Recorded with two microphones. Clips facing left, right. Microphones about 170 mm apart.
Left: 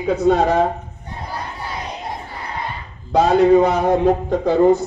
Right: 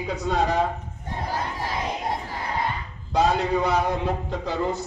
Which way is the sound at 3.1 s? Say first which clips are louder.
Left 9 dB; 50° left (ahead or behind).